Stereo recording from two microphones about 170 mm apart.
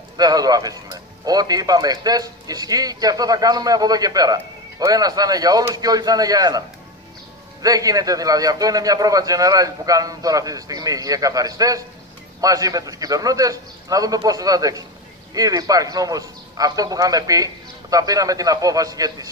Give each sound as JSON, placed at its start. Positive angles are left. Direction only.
{"t": 0.2, "sound": "speech", "side_deg": -25}
{"t": 7.6, "sound": "speech", "side_deg": -20}